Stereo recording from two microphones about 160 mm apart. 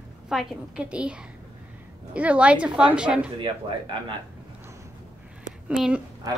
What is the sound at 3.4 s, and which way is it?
Speech, 30° right (ahead or behind).